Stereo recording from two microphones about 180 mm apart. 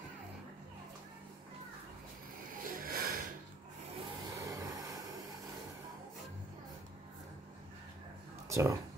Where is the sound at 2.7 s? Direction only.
55° right (ahead or behind).